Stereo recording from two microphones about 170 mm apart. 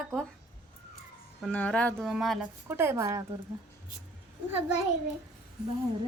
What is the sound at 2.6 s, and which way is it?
Speech, 15° right (ahead or behind).